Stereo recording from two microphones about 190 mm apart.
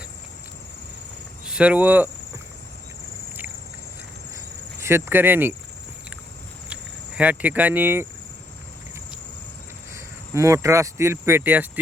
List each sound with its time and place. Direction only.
1.5 s speech: 5° right (ahead or behind)
4.8 s speech: 15° right (ahead or behind)
6.7 s speech: 5° right (ahead or behind)
9.9 s speech: 15° right (ahead or behind)